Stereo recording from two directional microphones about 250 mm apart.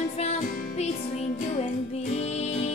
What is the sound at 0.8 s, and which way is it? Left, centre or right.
Music, left.